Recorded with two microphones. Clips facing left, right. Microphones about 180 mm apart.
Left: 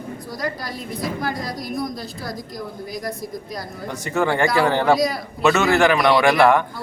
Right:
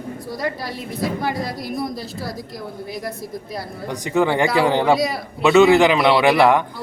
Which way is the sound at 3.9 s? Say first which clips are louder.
Right 3 dB; 15° right (ahead or behind).